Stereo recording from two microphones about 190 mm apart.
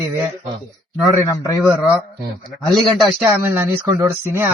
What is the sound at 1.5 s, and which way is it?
A man's voice, 10° right (ahead or behind).